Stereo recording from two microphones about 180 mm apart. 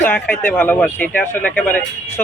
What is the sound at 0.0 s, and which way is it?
Speech, 10° left (ahead or behind).